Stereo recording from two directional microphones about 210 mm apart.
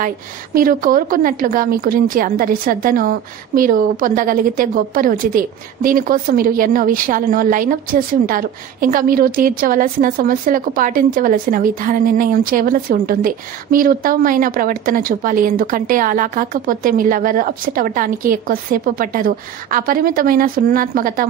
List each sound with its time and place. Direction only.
0.6 s a woman's voice: 40° right (ahead or behind)